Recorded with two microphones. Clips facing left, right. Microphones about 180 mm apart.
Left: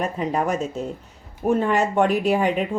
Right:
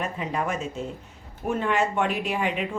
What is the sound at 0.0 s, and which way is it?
Speech, 40° left (ahead or behind).